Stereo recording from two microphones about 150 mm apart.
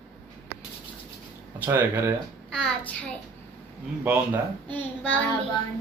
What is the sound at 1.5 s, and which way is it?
Speech, 10° right (ahead or behind).